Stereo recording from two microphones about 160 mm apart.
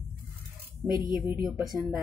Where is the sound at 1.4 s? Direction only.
Centre (ahead or behind).